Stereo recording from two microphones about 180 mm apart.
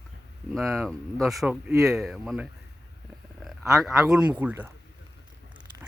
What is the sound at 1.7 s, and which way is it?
Speech, 15° right (ahead or behind).